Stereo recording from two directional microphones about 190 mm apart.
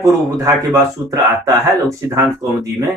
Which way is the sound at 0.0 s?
20° right (ahead or behind).